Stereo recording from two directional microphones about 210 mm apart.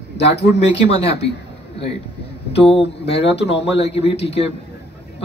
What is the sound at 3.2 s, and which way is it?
Speech, 55° left (ahead or behind).